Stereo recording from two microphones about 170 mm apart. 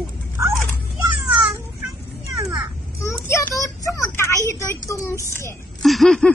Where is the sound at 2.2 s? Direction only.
20° right (ahead or behind).